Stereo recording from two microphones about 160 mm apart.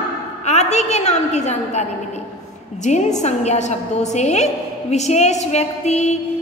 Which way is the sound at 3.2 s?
45° left (ahead or behind).